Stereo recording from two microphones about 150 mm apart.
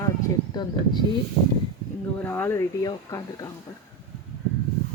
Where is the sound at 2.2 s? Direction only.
15° left (ahead or behind).